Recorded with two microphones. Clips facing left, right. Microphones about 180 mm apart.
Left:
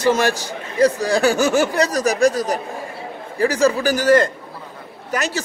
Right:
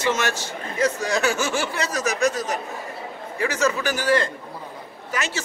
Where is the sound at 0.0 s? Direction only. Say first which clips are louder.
Left 6 dB; 35° left (ahead or behind).